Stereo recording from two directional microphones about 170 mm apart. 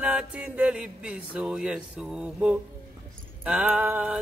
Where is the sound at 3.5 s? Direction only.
5° right (ahead or behind).